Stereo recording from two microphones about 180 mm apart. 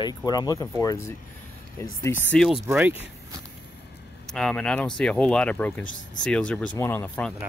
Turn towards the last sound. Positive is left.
turn(degrees=10)  # may be behind; listen again after turning